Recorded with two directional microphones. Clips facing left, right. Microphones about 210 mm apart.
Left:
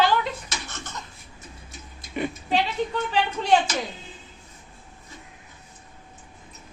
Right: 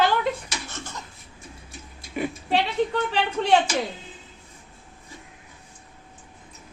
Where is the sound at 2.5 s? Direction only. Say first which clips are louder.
Right 2 dB; 65° right (ahead or behind).